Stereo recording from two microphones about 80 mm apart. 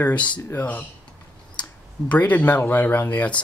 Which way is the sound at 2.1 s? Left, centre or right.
Left.